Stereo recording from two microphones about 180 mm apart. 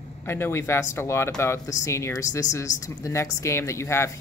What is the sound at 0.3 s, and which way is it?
Speech, 15° left (ahead or behind).